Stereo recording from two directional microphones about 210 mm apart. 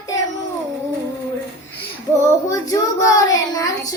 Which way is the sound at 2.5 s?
15° left (ahead or behind).